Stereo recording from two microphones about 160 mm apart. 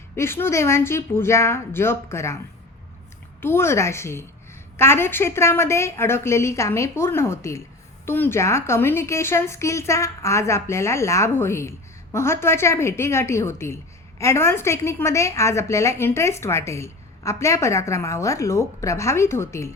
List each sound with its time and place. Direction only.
0.2 s a woman's voice: 15° left (ahead or behind)
3.4 s a woman's voice: 15° left (ahead or behind)